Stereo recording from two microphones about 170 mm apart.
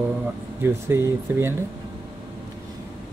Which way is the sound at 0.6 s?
15° right (ahead or behind).